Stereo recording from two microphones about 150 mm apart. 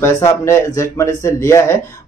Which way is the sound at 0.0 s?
20° left (ahead or behind).